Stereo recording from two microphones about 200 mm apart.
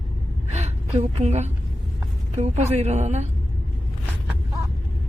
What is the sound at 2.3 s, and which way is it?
Speech, 35° right (ahead or behind).